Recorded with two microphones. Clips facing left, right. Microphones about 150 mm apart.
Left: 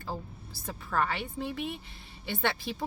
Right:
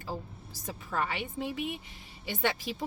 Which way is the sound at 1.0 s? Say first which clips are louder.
Even; 15° right (ahead or behind).